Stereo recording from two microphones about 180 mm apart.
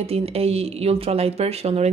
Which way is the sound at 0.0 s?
35° right (ahead or behind).